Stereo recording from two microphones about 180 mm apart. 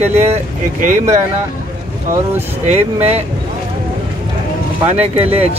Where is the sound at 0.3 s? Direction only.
45° right (ahead or behind).